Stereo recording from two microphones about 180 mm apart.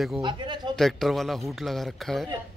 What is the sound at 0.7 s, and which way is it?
Speech, centre (ahead or behind).